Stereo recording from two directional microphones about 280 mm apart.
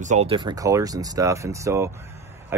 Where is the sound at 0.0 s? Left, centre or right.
Right.